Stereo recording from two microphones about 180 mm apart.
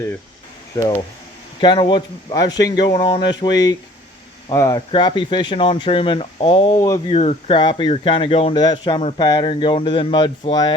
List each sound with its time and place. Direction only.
0.7 s speech: 20° left (ahead or behind)
7.1 s speech: 35° left (ahead or behind)